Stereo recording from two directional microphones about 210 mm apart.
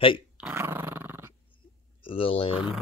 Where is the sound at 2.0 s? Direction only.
25° left (ahead or behind).